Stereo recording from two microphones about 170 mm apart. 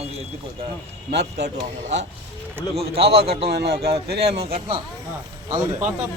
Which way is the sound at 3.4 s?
70° right (ahead or behind).